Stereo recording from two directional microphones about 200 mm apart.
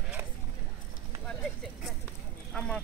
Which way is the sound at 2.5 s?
5° left (ahead or behind).